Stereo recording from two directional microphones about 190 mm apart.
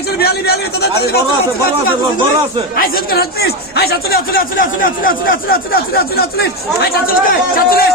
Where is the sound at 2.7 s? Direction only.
55° left (ahead or behind).